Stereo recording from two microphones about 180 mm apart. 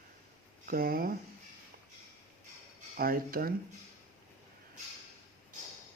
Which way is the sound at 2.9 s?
55° right (ahead or behind).